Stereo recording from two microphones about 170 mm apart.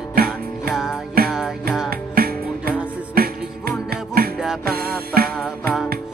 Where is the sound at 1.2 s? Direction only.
60° right (ahead or behind).